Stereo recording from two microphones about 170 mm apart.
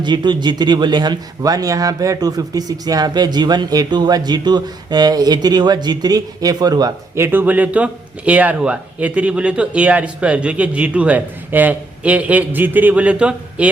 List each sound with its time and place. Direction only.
0.0 s speech: 25° right (ahead or behind)
7.3 s speech: 10° right (ahead or behind)